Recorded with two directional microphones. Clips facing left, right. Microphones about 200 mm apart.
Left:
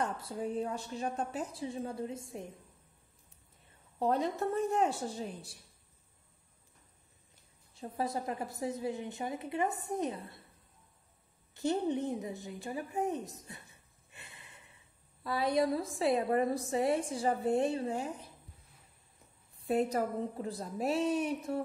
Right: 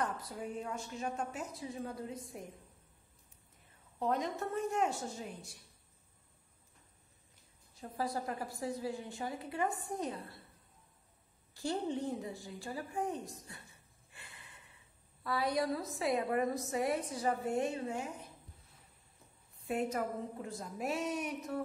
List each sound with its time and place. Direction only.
0.0 s a woman's voice: 25° left (ahead or behind)
4.0 s a woman's voice: 35° left (ahead or behind)
7.7 s a woman's voice: 25° left (ahead or behind)
11.5 s a woman's voice: 20° left (ahead or behind)
14.1 s gasp: 25° left (ahead or behind)
15.2 s a woman's voice: 25° left (ahead or behind)
19.7 s a woman's voice: 35° left (ahead or behind)